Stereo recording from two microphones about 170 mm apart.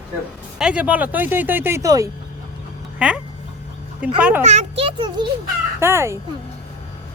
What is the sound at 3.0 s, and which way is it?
Speech, 5° right (ahead or behind).